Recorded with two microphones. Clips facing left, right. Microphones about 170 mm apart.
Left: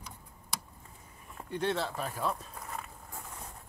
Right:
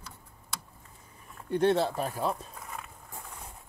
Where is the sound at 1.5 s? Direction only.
45° right (ahead or behind).